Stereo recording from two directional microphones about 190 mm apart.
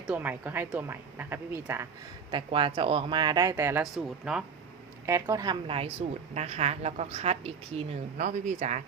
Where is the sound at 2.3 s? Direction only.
25° right (ahead or behind); by 4.4 s 5° right (ahead or behind).